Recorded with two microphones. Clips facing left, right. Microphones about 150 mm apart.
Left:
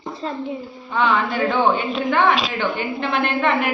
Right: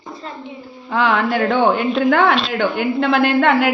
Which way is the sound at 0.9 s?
80° right.